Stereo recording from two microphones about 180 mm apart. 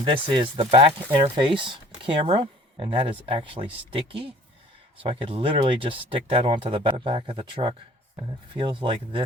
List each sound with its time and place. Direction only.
0.0 s speech: 25° right (ahead or behind)